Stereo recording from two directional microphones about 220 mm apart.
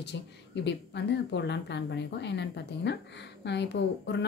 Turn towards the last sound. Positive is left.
turn(degrees=50)  # may be behind; listen again after turning